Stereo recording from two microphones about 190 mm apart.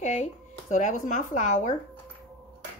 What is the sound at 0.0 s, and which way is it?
Speech, 40° left (ahead or behind).